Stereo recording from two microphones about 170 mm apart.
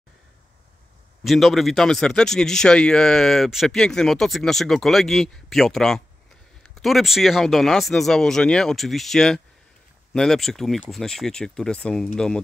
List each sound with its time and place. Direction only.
1.2 s speech: centre (ahead or behind)